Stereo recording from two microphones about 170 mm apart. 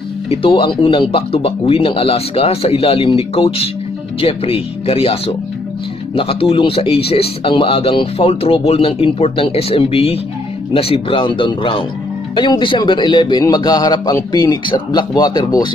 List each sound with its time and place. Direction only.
0.3 s a man's voice: 30° left (ahead or behind)